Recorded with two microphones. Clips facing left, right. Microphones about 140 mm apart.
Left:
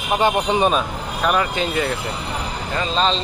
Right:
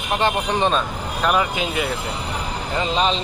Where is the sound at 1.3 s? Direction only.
5° right (ahead or behind).